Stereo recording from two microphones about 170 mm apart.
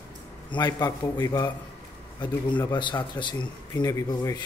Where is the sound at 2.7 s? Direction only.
25° left (ahead or behind).